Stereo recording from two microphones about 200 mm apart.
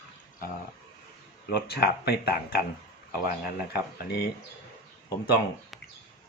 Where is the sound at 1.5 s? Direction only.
55° left (ahead or behind).